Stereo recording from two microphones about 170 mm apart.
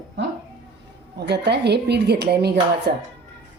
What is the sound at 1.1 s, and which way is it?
A woman's voice, 75° right (ahead or behind).